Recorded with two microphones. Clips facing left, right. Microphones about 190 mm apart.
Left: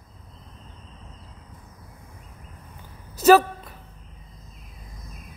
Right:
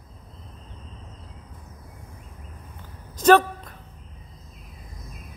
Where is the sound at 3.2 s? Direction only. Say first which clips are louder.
Left 1 dB; 5° left (ahead or behind).